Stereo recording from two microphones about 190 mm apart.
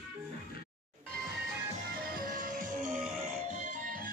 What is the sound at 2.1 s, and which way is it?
Music, 50° right (ahead or behind).